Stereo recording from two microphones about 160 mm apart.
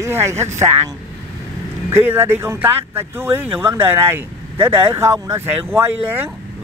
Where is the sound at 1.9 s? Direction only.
15° right (ahead or behind).